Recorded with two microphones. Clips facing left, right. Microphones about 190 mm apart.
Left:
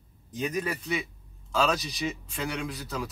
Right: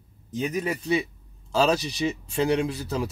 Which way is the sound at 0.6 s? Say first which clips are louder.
Right 7 dB; 25° right (ahead or behind).